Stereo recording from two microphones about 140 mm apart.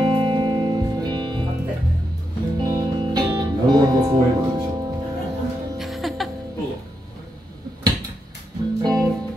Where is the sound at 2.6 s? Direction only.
30° right (ahead or behind).